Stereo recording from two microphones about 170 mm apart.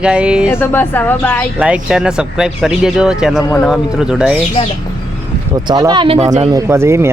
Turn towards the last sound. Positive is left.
turn(degrees=-15)  # may be behind; listen again after turning